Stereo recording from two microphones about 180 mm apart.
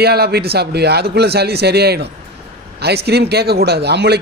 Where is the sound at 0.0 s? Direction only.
60° right (ahead or behind).